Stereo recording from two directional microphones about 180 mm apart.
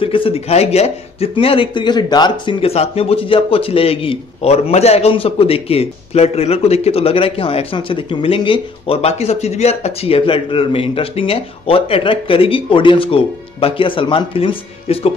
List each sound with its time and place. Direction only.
0.0 s speech: 30° left (ahead or behind)